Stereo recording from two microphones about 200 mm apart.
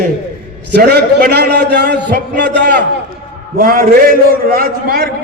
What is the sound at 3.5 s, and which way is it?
A man's voice, 45° right (ahead or behind).